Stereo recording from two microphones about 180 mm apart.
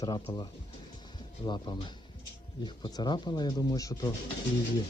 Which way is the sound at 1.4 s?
25° left (ahead or behind).